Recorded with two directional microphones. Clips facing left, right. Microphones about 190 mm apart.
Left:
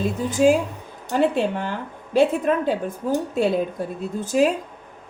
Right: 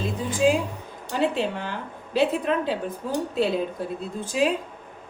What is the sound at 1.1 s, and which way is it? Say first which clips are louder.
Speech: left 4 dB; 50° left (ahead or behind).